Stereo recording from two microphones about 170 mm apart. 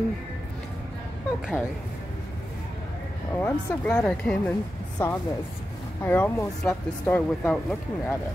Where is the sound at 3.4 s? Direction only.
15° left (ahead or behind).